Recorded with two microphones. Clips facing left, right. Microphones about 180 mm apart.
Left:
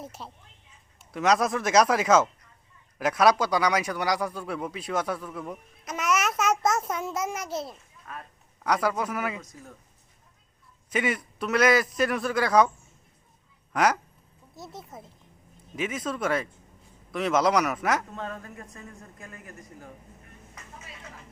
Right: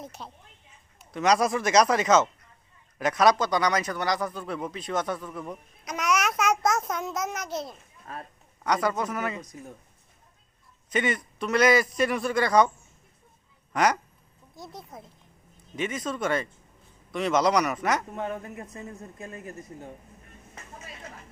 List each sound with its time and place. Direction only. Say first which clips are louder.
0.0 s a woman's voice: even; 5° left (ahead or behind)
8.0 s speech: right 2 dB; 35° right (ahead or behind)
8.6 s speech: even; 5° left (ahead or behind)
9.4 s speech: right 4 dB; 20° right (ahead or behind)
10.8 s a man's voice: right 1 dB; 5° left (ahead or behind)
13.7 s a man's voice: even; 5° left (ahead or behind)
18.1 s speech: right 4 dB; 20° right (ahead or behind)